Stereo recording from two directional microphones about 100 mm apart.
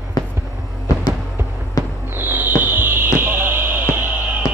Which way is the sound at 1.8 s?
40° left (ahead or behind).